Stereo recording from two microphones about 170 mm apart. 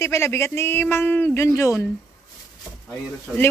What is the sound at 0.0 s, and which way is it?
Speech, 15° left (ahead or behind).